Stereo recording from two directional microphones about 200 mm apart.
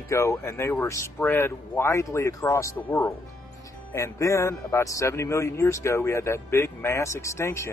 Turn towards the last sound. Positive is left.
turn(degrees=15)  # may be behind; listen again after turning